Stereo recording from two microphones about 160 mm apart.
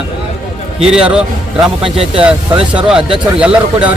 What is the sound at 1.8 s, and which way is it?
Speech, 35° right (ahead or behind).